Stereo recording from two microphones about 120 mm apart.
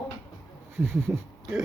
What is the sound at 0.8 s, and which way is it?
Speech, 20° right (ahead or behind).